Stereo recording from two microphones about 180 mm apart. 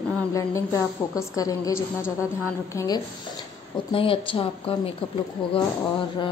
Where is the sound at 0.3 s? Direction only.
20° left (ahead or behind).